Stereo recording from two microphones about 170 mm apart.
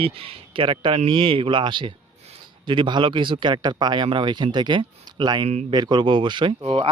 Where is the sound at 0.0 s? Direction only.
35° right (ahead or behind).